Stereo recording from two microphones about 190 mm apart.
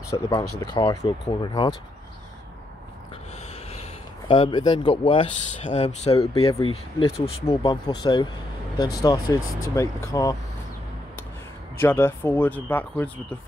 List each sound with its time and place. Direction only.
0.1 s speech: 15° left (ahead or behind)
4.3 s speech: 25° left (ahead or behind)
5.7 s speech: 35° left (ahead or behind); by 10.3 s 15° left (ahead or behind)
11.7 s speech: 10° left (ahead or behind)